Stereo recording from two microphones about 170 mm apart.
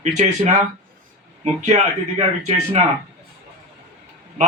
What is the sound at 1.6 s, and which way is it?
Speech, 40° right (ahead or behind).